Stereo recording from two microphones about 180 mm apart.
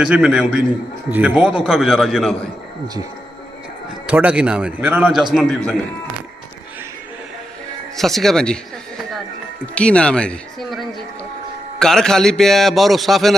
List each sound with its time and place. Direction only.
0.0 s a man's voice: 5° right (ahead or behind)
4.0 s a man's voice: 10° right (ahead or behind)
5.3 s a man's voice: centre (ahead or behind)
7.9 s a man's voice: centre (ahead or behind)
9.7 s a man's voice: 5° left (ahead or behind)